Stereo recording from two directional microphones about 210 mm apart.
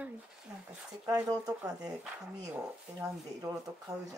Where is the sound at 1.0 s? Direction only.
20° right (ahead or behind).